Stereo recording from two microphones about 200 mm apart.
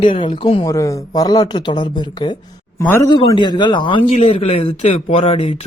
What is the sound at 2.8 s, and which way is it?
Speech, 10° left (ahead or behind).